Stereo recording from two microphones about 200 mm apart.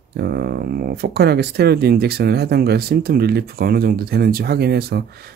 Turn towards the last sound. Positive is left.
turn(degrees=-50)  # may be behind; listen again after turning